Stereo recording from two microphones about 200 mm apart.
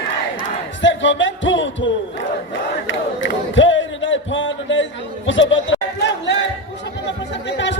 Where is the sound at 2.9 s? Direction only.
70° left (ahead or behind).